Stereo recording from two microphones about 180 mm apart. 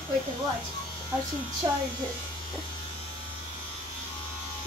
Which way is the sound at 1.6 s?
25° right (ahead or behind).